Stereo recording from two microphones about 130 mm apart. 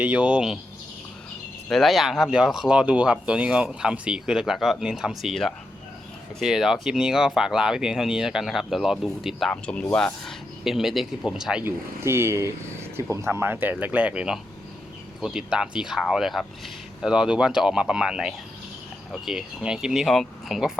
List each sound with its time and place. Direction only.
0.0 s speech: 10° right (ahead or behind)
1.7 s speech: centre (ahead or behind)
9.5 s speech: 10° left (ahead or behind)
11.6 s speech: 20° right (ahead or behind); by 20.7 s centre (ahead or behind)